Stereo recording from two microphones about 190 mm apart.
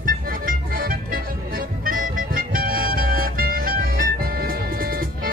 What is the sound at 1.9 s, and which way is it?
Music, 50° right (ahead or behind).